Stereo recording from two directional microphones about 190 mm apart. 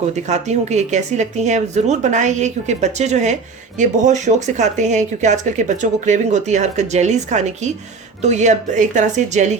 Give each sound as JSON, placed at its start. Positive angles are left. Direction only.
{"t": 0.3, "sound": "speech", "side_deg": -35}